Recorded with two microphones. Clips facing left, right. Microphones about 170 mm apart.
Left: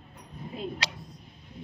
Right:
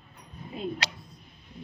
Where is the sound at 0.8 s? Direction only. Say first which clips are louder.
Right 1 dB; 55° right (ahead or behind).